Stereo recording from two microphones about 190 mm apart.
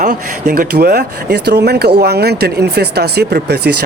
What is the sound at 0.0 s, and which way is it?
Speech, 45° right (ahead or behind).